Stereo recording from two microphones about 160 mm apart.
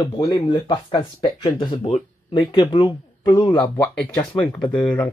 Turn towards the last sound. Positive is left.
turn(degrees=10)  # may be behind; listen again after turning